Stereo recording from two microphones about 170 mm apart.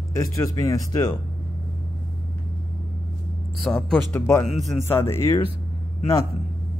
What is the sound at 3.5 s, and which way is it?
Speech, centre (ahead or behind).